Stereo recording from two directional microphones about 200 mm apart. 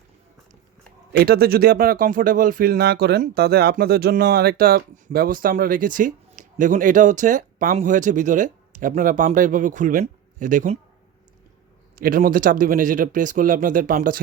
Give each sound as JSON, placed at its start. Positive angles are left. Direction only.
{"t": 1.1, "sound": "speech", "side_deg": -50}
{"t": 11.9, "sound": "speech", "side_deg": -45}